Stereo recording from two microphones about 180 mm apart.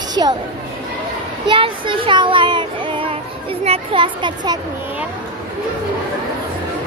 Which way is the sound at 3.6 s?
30° right (ahead or behind).